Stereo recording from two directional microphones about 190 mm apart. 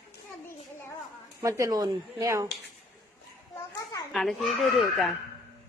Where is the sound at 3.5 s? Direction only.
20° left (ahead or behind).